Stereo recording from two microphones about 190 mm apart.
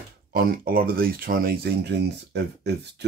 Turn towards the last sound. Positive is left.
turn(degrees=-60)  # may be behind; listen again after turning